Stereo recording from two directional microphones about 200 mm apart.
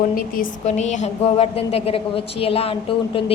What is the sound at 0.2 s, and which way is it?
A woman's voice, 40° left (ahead or behind).